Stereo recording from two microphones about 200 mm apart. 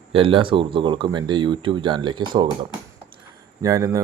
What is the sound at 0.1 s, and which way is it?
Speech, 25° right (ahead or behind).